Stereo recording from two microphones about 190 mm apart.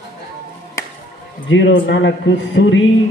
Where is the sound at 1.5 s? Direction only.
65° left (ahead or behind).